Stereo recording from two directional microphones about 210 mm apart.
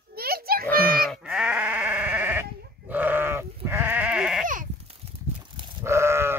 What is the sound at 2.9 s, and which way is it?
Goat, 10° right (ahead or behind).